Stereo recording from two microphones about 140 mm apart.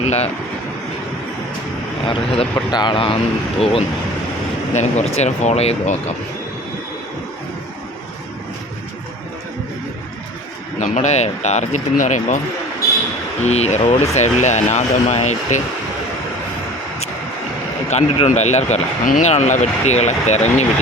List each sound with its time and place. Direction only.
0.0 s speech: 50° left (ahead or behind)
2.0 s a man's voice: 45° left (ahead or behind)
4.7 s speech: 55° left (ahead or behind)
10.8 s speech: 60° left (ahead or behind)
13.4 s speech: 55° left (ahead or behind)
17.8 s a man's voice: 55° left (ahead or behind)
19.0 s speech: 75° left (ahead or behind)
19.3 s speech: 55° left (ahead or behind)